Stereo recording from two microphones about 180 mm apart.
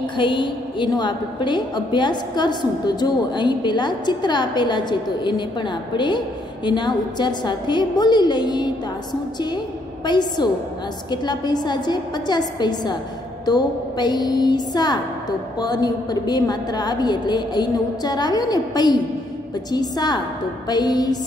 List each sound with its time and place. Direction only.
0.0 s a woman's voice: 25° left (ahead or behind)
10.0 s a woman's voice: 25° left (ahead or behind)